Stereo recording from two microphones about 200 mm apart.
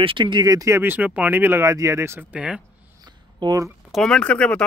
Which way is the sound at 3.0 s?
20° right (ahead or behind).